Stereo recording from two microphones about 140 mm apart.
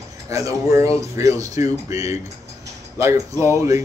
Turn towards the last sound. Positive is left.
turn(degrees=-20)  # may be behind; listen again after turning